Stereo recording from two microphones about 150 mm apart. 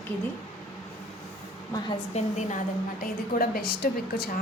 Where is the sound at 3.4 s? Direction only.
90° left.